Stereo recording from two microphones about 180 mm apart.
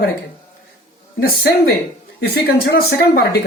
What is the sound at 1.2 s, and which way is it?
Speech, 60° left (ahead or behind).